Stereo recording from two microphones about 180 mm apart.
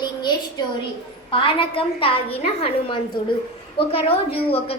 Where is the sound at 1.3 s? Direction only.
30° left (ahead or behind).